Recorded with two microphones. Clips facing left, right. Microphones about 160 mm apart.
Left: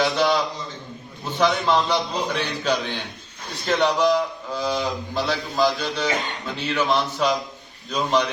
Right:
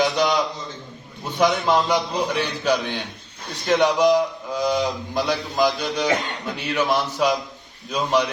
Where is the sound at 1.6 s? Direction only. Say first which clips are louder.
Right 1 dB; 10° right (ahead or behind).